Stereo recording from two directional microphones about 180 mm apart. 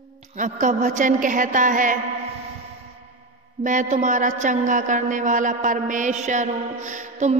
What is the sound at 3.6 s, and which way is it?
A woman's voice, 45° right (ahead or behind).